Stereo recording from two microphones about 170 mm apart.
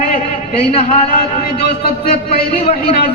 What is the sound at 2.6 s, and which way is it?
Speech, 35° left (ahead or behind).